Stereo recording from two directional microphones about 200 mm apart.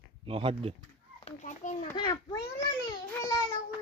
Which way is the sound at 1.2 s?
40° left (ahead or behind).